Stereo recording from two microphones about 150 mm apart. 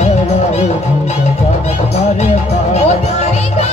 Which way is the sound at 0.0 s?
45° left (ahead or behind).